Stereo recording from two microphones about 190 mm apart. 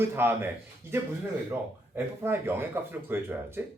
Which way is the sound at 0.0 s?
10° right (ahead or behind).